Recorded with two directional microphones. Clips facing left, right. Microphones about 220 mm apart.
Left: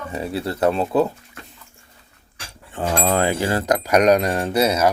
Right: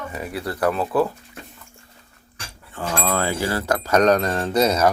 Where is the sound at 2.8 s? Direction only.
20° left (ahead or behind).